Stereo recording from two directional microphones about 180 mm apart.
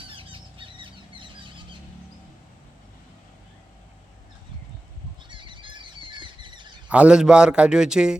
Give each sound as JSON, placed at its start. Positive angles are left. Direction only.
{"t": 0.1, "sound": "a sound", "side_deg": -30}
{"t": 5.3, "sound": "squawk", "side_deg": -25}
{"t": 6.8, "sound": "a man's voice", "side_deg": -5}